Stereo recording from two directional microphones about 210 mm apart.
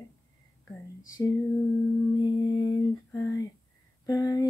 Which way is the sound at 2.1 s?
20° left (ahead or behind).